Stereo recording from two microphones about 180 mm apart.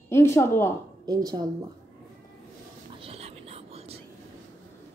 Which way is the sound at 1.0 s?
20° right (ahead or behind).